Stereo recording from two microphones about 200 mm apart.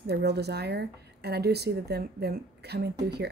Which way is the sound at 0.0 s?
55° right (ahead or behind).